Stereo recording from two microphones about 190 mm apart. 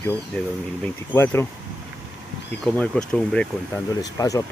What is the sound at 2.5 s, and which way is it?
Speech, 5° left (ahead or behind).